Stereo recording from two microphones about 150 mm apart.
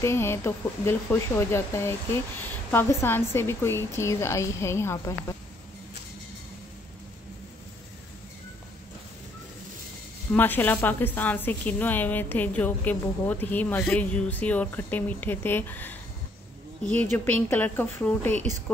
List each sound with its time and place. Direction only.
0.0 s a woman's voice: 15° left (ahead or behind)
10.3 s a woman's voice: 10° left (ahead or behind)